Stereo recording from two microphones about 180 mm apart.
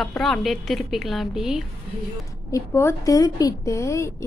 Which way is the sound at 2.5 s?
15° left (ahead or behind).